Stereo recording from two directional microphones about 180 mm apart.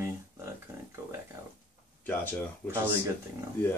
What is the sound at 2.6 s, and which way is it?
Speech, 10° right (ahead or behind).